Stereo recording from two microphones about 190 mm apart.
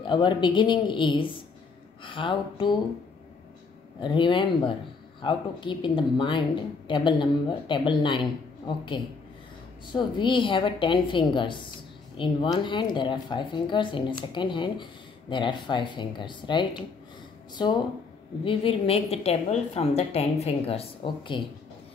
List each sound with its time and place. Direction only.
0.0 s speech: 25° left (ahead or behind)
4.0 s a woman's voice: 25° left (ahead or behind)